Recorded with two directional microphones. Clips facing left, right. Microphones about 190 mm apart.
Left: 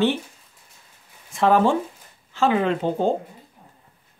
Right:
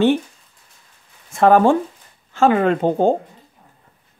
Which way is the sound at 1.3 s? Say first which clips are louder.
Right 5 dB; 50° right (ahead or behind).